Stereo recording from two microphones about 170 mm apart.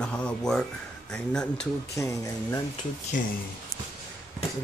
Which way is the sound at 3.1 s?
50° left (ahead or behind).